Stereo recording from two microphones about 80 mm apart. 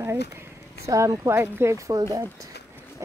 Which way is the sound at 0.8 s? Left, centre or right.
Right.